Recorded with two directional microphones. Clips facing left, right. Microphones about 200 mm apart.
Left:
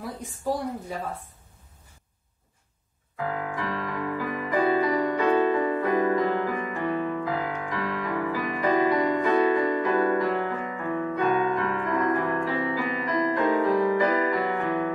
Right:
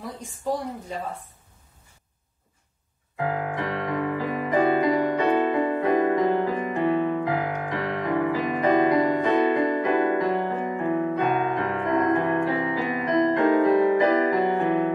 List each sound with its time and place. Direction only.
3.2 s music: 20° right (ahead or behind)